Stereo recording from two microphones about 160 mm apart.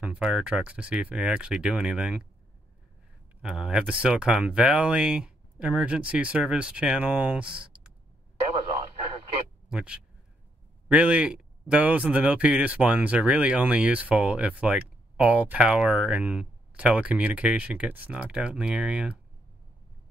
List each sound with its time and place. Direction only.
0.0 s speech: 5° right (ahead or behind)
3.4 s speech: 5° right (ahead or behind)
9.7 s speech: 5° right (ahead or behind)